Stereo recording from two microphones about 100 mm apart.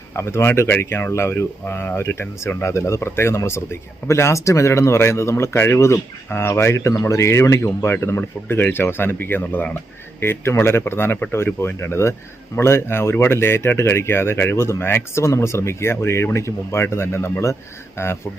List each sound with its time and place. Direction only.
0.2 s speech: 25° left (ahead or behind)